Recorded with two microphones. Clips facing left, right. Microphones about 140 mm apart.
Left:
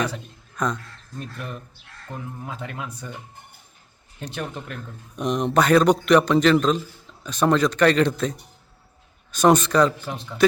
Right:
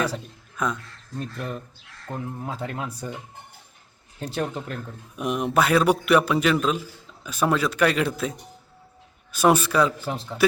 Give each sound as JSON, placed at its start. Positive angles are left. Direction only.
{"t": 0.5, "sound": "speech", "side_deg": -5}
{"t": 1.4, "sound": "speech", "side_deg": -35}
{"t": 4.2, "sound": "speech", "side_deg": -35}
{"t": 5.1, "sound": "a man's voice", "side_deg": -5}
{"t": 10.1, "sound": "speech", "side_deg": -30}